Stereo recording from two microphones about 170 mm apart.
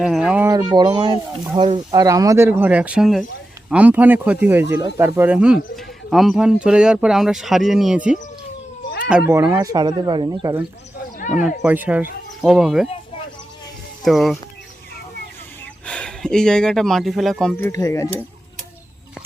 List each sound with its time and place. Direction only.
0.0 s speech: 5° right (ahead or behind)
0.5 s speech: 25° right (ahead or behind); by 9.3 s 5° right (ahead or behind)
9.3 s speech: 15° right (ahead or behind)
11.6 s speech: 10° right (ahead or behind)
14.0 s speech: centre (ahead or behind)
15.9 s speech: 5° left (ahead or behind)
17.6 s speech: 20° left (ahead or behind)